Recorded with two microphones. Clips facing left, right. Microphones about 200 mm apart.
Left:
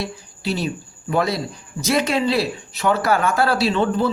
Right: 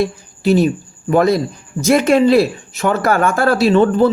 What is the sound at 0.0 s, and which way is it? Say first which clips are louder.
Speech: right 10 dB; 50° right (ahead or behind).